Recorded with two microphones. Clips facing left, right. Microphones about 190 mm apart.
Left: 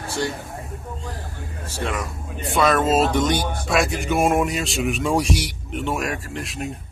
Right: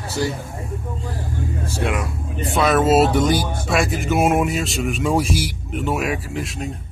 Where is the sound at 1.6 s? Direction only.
10° right (ahead or behind).